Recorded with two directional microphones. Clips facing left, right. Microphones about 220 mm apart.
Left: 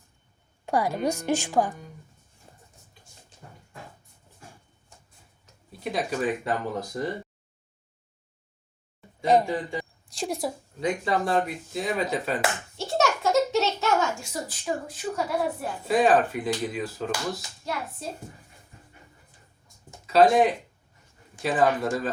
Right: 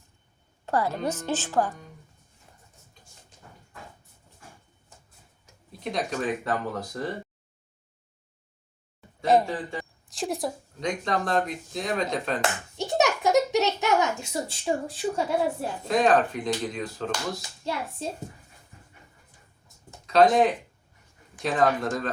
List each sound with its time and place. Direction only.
0.6 s speech: 15° left (ahead or behind)
5.8 s speech: 5° left (ahead or behind)
9.2 s speech: centre (ahead or behind)
12.7 s a sound: 15° right (ahead or behind)
15.9 s speech: 5° left (ahead or behind)
17.7 s a child's voice: 25° right (ahead or behind)
19.6 s a sound: 5° left (ahead or behind)
21.4 s speech: 5° left (ahead or behind)